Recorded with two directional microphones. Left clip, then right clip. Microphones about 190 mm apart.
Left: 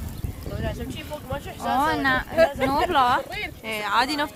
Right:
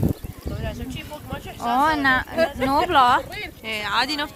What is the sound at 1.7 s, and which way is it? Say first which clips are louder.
Speech: right 3 dB; 50° right (ahead or behind).